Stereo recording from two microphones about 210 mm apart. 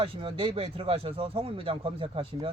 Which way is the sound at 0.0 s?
25° right (ahead or behind).